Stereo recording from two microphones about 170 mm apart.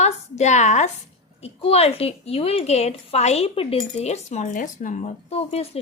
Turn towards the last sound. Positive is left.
turn(degrees=35)  # may be behind; listen again after turning